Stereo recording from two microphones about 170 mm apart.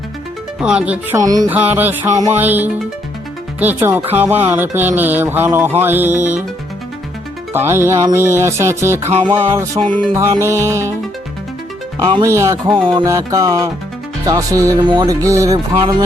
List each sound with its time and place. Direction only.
0.6 s music: 5° right (ahead or behind)
1.1 s music: 20° right (ahead or behind)
1.5 s music: 10° right (ahead or behind)
7.5 s music: 15° right (ahead or behind)
11.9 s music: 25° right (ahead or behind)